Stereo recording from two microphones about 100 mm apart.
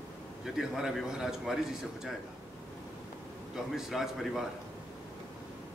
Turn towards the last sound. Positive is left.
turn(degrees=-5)  # may be behind; listen again after turning